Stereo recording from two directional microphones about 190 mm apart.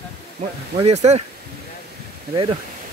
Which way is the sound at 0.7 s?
35° right (ahead or behind).